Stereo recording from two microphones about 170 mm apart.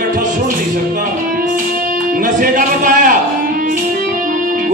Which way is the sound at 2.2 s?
50° right (ahead or behind).